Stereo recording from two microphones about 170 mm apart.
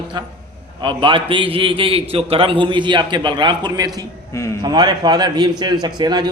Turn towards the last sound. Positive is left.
turn(degrees=-25)  # may be behind; listen again after turning